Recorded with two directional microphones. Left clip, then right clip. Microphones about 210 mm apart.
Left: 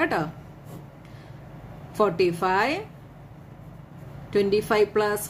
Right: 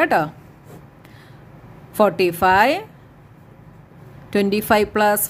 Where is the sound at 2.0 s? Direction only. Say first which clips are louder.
Right 6 dB; 40° right (ahead or behind).